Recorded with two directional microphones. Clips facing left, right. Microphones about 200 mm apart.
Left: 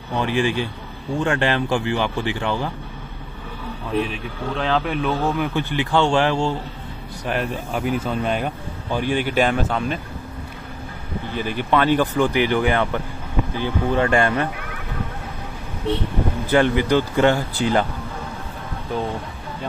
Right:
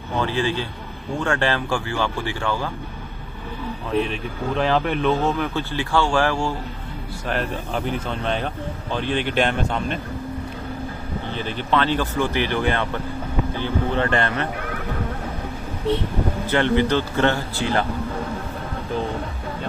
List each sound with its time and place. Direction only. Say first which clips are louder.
0.1 s a man's voice: left 2 dB; 15° left (ahead or behind)
4.0 s speech: right 1 dB; centre (ahead or behind); by 6.5 s 20° left (ahead or behind)
7.2 s speech: left 1 dB; 10° left (ahead or behind)
11.3 s speech: left 2 dB; 10° left (ahead or behind)
16.4 s speech: left 2 dB; 15° left (ahead or behind)